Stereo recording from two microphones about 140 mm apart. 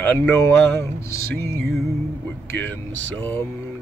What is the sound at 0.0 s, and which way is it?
Speech, 15° left (ahead or behind).